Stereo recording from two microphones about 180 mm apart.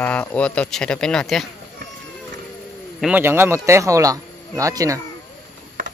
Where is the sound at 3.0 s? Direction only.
10° right (ahead or behind).